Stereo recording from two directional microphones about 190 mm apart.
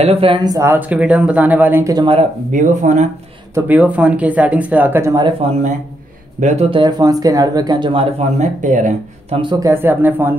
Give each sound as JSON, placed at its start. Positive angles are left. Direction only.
{"t": 0.0, "sound": "speech", "side_deg": -30}
{"t": 2.0, "sound": "speech", "side_deg": -35}
{"t": 3.5, "sound": "speech", "side_deg": -10}
{"t": 6.4, "sound": "speech", "side_deg": -35}
{"t": 9.4, "sound": "speech", "side_deg": -20}